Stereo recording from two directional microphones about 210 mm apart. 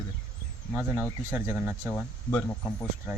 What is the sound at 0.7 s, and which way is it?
Speech, centre (ahead or behind).